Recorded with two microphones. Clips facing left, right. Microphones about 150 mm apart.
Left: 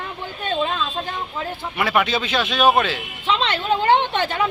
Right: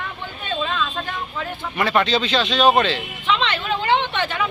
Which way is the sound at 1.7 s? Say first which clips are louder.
Right 1 dB; 5° left (ahead or behind).